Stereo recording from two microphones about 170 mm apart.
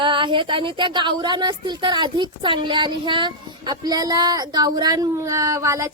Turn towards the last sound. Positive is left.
turn(degrees=-20)  # may be behind; listen again after turning